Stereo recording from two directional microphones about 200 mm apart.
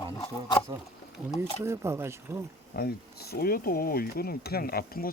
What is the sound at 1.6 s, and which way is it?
Speech, 15° right (ahead or behind).